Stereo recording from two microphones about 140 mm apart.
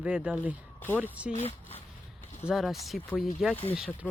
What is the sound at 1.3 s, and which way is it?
Speech, 50° left (ahead or behind).